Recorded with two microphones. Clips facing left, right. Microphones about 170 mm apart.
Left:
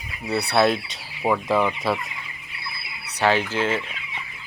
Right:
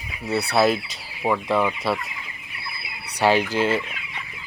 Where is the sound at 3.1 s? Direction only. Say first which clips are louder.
Right 2 dB; 10° right (ahead or behind).